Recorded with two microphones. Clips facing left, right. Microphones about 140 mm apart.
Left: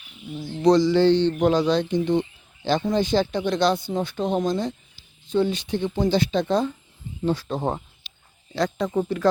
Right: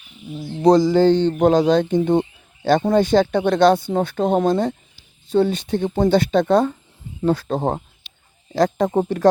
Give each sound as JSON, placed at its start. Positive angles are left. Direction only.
{"t": 0.7, "sound": "speech", "side_deg": -45}
{"t": 5.3, "sound": "speech", "side_deg": -50}